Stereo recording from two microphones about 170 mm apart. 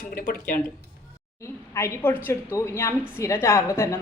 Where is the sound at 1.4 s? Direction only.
15° left (ahead or behind).